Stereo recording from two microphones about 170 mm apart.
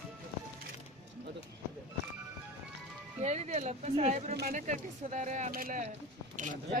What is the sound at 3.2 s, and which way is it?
Speech, 40° right (ahead or behind).